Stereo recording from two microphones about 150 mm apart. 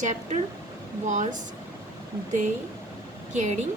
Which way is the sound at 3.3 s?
50° right (ahead or behind).